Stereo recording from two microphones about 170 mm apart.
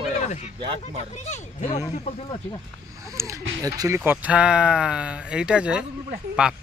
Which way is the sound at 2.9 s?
20° right (ahead or behind).